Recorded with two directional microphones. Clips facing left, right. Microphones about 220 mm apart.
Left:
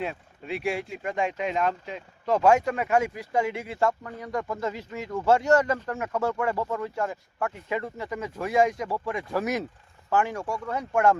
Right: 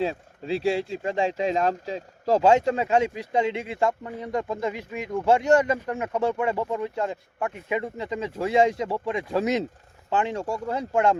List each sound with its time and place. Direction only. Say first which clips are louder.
0.0 s speech: right 6 dB; 30° right (ahead or behind)